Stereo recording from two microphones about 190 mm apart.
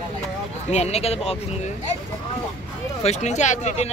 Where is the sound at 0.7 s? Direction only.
35° left (ahead or behind).